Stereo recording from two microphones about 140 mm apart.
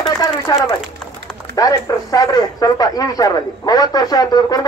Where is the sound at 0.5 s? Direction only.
30° left (ahead or behind).